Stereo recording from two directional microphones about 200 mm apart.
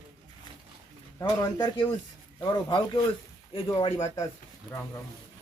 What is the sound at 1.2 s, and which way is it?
Speech, 20° left (ahead or behind).